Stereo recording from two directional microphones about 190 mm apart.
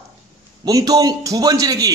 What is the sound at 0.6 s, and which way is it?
A man's voice, 20° right (ahead or behind).